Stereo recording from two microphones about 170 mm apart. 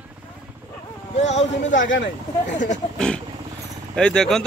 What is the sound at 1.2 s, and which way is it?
Speech, 90° left.